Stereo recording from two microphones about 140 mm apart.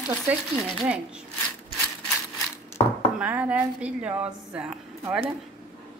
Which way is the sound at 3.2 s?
10° right (ahead or behind).